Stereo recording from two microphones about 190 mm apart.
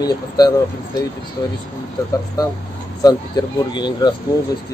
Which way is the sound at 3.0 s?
20° left (ahead or behind).